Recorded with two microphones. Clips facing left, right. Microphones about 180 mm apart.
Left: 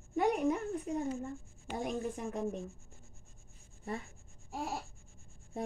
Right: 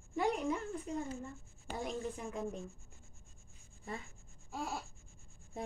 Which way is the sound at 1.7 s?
55° left (ahead or behind).